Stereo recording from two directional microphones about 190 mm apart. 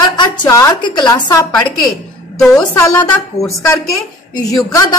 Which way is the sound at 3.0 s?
15° left (ahead or behind).